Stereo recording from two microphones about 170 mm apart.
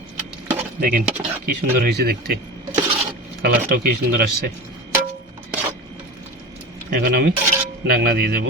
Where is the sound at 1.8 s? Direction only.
70° right (ahead or behind).